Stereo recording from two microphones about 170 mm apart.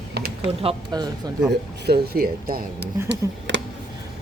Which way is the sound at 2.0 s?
60° right (ahead or behind).